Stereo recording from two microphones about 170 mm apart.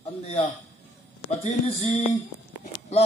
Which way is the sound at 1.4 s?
40° left (ahead or behind).